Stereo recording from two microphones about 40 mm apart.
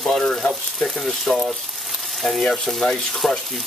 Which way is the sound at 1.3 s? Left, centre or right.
Centre.